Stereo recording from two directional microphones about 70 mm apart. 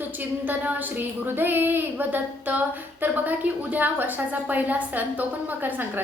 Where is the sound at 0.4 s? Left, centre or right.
Right.